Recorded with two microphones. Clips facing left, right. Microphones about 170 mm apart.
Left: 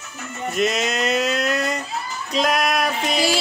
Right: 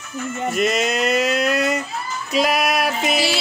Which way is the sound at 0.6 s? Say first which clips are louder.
Right 1 dB; centre (ahead or behind).